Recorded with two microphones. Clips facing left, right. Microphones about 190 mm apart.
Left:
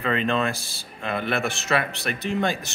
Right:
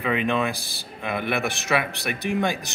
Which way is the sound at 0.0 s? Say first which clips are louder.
Even; 10° right (ahead or behind).